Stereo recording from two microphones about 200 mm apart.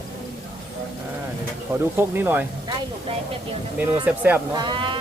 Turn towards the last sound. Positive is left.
turn(degrees=-25)  # may be behind; listen again after turning